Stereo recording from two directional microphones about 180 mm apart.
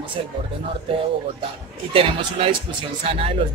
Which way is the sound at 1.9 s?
30° right (ahead or behind).